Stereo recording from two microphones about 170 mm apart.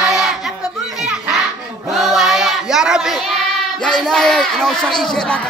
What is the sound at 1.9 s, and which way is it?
Child singing, centre (ahead or behind).